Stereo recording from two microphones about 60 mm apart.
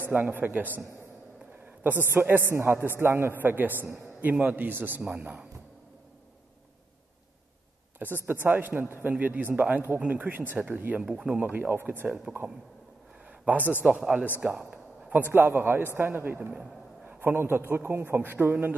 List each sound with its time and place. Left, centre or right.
0.0 s a man's voice: right
8.0 s a man's voice: right
11.0 s speech: centre
11.3 s a man's voice: right
13.5 s a man's voice: right
13.8 s speech: centre
14.5 s a sound: right
15.2 s a man's voice: right
16.5 s a sound: right
17.2 s a man's voice: right